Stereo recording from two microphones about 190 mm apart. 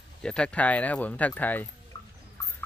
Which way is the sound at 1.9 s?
15° left (ahead or behind).